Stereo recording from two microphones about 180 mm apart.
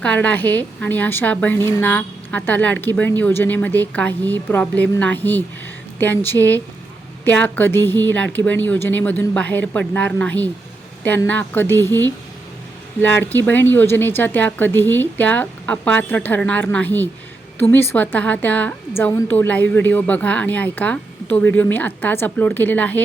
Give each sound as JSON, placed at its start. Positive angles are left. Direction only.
{"t": 0.0, "sound": "a woman's voice", "side_deg": 5}